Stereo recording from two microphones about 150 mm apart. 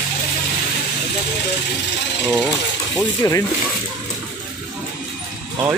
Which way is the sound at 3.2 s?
20° left (ahead or behind).